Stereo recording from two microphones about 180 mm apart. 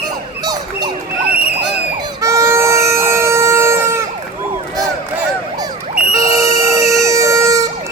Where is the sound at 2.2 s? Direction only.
15° right (ahead or behind).